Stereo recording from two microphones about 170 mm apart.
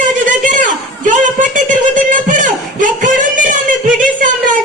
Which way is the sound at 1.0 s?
50° right (ahead or behind).